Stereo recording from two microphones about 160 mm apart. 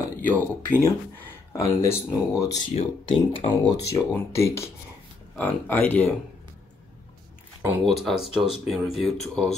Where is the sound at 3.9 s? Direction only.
15° left (ahead or behind).